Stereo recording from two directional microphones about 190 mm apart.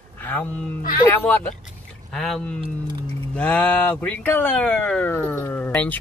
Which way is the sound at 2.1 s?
Centre (ahead or behind).